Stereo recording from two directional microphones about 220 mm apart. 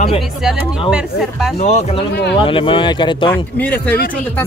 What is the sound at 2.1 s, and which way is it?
Speech, 50° left (ahead or behind).